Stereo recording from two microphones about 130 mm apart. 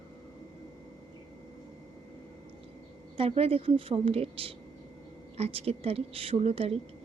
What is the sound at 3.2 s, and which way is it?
A woman's voice, 45° right (ahead or behind).